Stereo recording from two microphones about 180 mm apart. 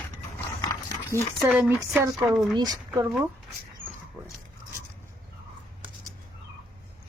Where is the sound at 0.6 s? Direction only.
15° left (ahead or behind).